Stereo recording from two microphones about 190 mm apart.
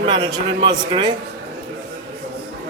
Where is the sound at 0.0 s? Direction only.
25° right (ahead or behind).